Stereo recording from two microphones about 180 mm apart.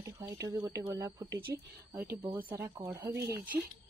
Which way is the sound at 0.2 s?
20° right (ahead or behind).